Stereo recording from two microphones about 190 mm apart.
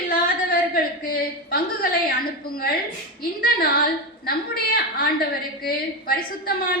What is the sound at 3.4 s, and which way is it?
A woman's voice, 50° left (ahead or behind).